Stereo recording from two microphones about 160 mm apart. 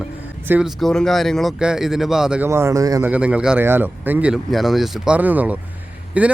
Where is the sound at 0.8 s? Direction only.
Centre (ahead or behind).